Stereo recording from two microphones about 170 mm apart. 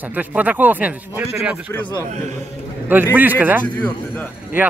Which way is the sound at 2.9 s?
10° right (ahead or behind).